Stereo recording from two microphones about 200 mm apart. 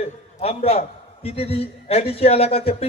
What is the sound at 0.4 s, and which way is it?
A man's voice, 30° left (ahead or behind).